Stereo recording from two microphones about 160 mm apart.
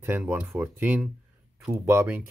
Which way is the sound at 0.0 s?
15° right (ahead or behind).